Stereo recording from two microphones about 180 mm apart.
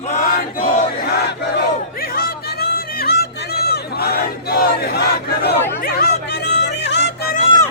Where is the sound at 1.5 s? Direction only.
55° left (ahead or behind).